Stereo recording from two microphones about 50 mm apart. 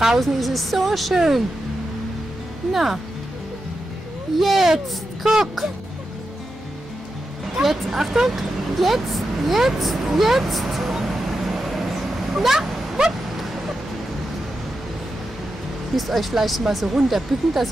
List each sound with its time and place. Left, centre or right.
0.2 s speech: centre
2.7 s speech: centre
4.4 s speech: centre
7.6 s vehicle: centre
16.0 s speech: centre